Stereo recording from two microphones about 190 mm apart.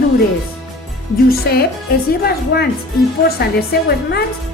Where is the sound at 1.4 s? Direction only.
55° left (ahead or behind).